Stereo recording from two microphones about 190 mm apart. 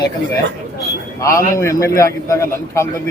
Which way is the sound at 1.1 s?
15° left (ahead or behind).